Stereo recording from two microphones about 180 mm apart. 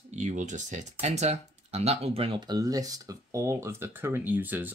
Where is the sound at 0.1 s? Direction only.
45° right (ahead or behind).